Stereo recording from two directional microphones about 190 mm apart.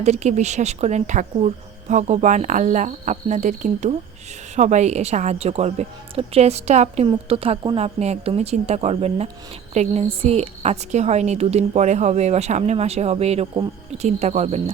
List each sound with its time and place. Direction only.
0.0 s a woman's voice: 35° right (ahead or behind)